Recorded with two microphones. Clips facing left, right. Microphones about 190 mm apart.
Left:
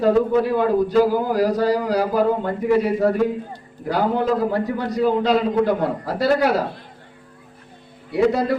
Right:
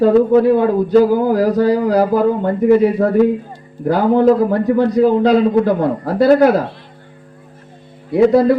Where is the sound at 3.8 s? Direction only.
50° right (ahead or behind).